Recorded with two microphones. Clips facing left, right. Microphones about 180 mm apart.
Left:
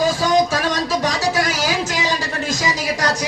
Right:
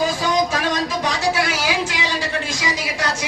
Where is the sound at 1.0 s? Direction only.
40° left (ahead or behind).